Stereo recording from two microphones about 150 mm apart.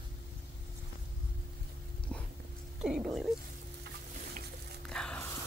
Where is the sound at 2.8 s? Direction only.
5° right (ahead or behind).